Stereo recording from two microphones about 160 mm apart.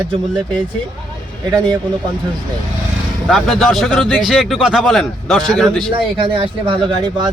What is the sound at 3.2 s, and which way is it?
Speech, centre (ahead or behind).